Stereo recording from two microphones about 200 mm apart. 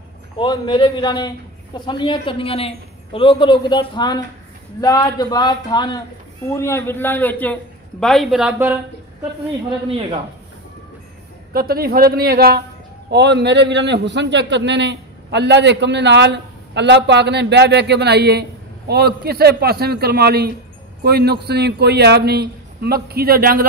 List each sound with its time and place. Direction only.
0.4 s a man's voice: 25° left (ahead or behind); by 8.7 s 10° right (ahead or behind)
11.5 s a man's voice: 50° right (ahead or behind)